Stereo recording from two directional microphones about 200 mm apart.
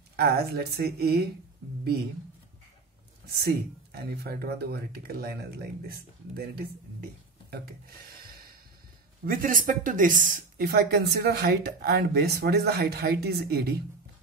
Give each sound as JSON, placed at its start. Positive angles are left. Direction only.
{"t": 0.1, "sound": "speech", "side_deg": -50}
{"t": 3.3, "sound": "speech", "side_deg": -50}